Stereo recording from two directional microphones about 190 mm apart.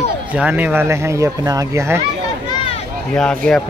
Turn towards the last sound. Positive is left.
turn(degrees=5)  # may be behind; listen again after turning